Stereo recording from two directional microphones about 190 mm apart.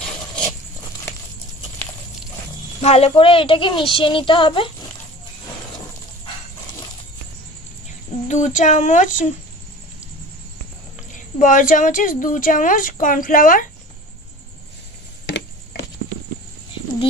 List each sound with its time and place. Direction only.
2.8 s a woman's voice: 35° left (ahead or behind)
8.3 s speech: 40° left (ahead or behind)
11.1 s speech: 40° left (ahead or behind)
15.2 s a sound: 65° left (ahead or behind)